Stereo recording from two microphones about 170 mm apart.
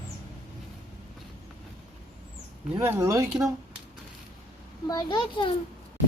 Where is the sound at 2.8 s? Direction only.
15° right (ahead or behind).